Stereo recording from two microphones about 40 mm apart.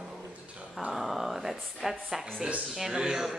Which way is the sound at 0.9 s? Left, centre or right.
Centre.